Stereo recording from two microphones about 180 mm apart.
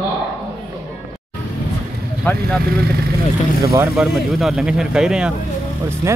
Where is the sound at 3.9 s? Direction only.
Centre (ahead or behind).